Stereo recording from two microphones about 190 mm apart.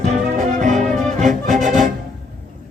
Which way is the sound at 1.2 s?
40° right (ahead or behind).